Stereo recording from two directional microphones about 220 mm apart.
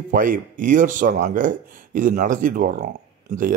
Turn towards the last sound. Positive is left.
turn(degrees=-40)  # may be behind; listen again after turning